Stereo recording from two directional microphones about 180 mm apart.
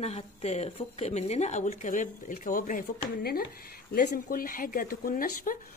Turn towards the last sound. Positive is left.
turn(degrees=50)  # may be behind; listen again after turning